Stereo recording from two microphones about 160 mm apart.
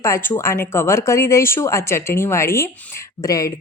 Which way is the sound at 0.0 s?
15° left (ahead or behind).